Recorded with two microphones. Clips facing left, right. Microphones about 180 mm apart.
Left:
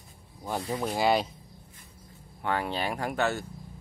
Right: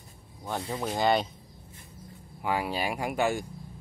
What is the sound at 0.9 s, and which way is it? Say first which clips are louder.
Speech: even; 5° left (ahead or behind).